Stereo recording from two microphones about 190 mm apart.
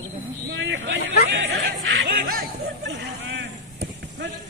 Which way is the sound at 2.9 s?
70° right (ahead or behind).